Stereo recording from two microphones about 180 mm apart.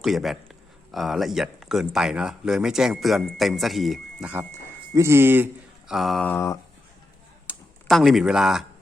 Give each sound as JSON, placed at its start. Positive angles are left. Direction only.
{"t": 0.0, "sound": "speech", "side_deg": 0}
{"t": 5.9, "sound": "speech", "side_deg": 0}
{"t": 6.3, "sound": "speech", "side_deg": 15}
{"t": 7.5, "sound": "computer keyboard", "side_deg": 10}
{"t": 7.9, "sound": "speech", "side_deg": 0}